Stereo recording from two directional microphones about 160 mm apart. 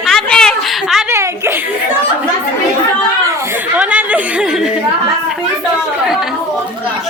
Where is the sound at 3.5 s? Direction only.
10° right (ahead or behind).